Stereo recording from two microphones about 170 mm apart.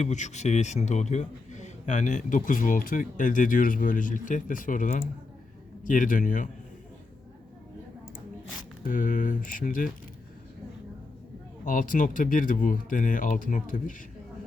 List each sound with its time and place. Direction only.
0.0 s a man's voice: 45° left (ahead or behind)
8.8 s a man's voice: 50° left (ahead or behind)
11.6 s a man's voice: 55° left (ahead or behind)